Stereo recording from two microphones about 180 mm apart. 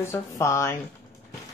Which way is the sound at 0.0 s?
15° left (ahead or behind).